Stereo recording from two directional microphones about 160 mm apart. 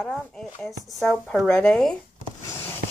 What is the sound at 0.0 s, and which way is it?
Speech, centre (ahead or behind).